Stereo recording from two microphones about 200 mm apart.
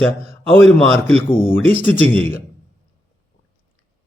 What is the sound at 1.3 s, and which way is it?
Speech, 25° left (ahead or behind).